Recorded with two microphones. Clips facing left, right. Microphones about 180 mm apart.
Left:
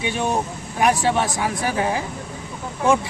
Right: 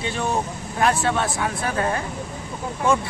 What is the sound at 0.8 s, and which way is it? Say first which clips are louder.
Speech: left 2 dB; 20° left (ahead or behind).